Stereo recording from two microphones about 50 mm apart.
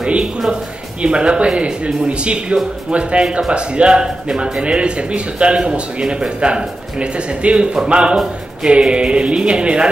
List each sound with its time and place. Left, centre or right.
0.0 s speech: centre